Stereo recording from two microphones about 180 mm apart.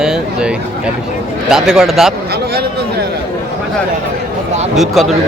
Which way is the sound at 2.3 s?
60° right (ahead or behind).